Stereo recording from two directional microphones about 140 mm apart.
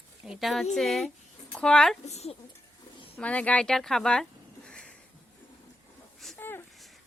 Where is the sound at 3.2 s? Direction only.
10° left (ahead or behind).